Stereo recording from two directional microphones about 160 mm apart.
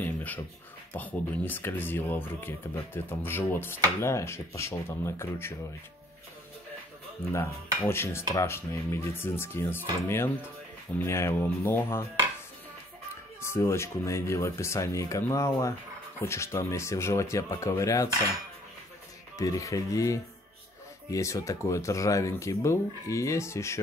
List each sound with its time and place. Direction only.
0.0 s a sound: 10° left (ahead or behind)
0.9 s speech: 10° left (ahead or behind)
7.3 s speech: 15° left (ahead or behind)
13.4 s speech: 15° left (ahead or behind)
19.3 s speech: 20° left (ahead or behind)